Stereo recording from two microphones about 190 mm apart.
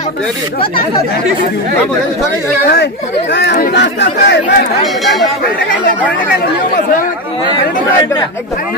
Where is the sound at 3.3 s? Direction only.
65° left (ahead or behind).